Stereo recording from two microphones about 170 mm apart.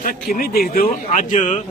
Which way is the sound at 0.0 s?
55° left (ahead or behind).